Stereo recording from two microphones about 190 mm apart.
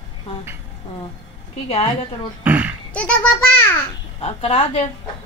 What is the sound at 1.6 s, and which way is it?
Speech, 30° left (ahead or behind).